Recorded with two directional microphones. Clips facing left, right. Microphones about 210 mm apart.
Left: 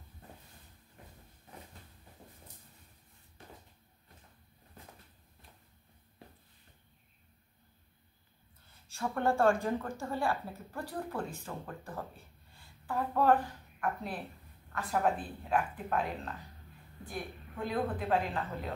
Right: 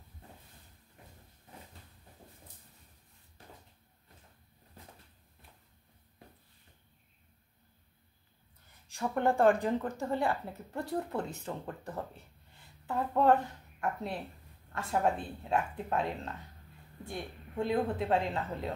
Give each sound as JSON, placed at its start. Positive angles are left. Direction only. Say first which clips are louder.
{"t": 8.6, "sound": "a woman's voice", "louder": "right 1 dB", "side_deg": -15}